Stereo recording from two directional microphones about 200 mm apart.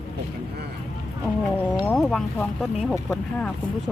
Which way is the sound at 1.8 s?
5° left (ahead or behind).